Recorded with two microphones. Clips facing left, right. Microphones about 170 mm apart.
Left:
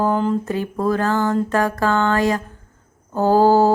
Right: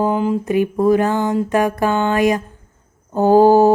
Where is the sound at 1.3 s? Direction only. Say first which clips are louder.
Right 2 dB; 15° right (ahead or behind).